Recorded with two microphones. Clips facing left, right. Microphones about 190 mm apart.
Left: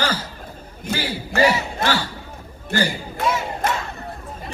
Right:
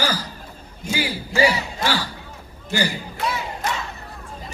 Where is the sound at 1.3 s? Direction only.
60° left (ahead or behind).